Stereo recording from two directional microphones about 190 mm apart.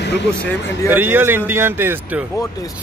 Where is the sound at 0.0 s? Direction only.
65° left (ahead or behind).